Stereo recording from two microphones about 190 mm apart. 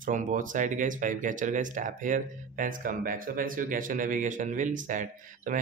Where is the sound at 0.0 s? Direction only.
45° right (ahead or behind).